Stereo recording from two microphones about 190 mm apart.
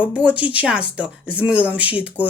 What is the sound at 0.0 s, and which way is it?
Speech, 5° right (ahead or behind).